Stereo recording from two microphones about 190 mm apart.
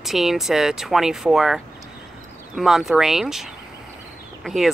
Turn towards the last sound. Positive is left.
turn(degrees=0)  # may be behind; listen again after turning